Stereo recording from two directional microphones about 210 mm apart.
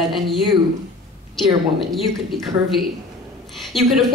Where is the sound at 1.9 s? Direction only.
Centre (ahead or behind).